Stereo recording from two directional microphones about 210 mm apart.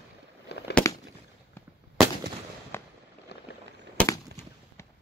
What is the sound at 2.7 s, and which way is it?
Fireworks, 10° left (ahead or behind).